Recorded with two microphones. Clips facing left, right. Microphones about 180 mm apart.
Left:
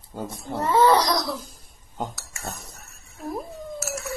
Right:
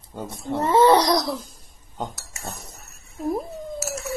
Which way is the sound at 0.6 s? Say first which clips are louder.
Right 2 dB; 20° right (ahead or behind).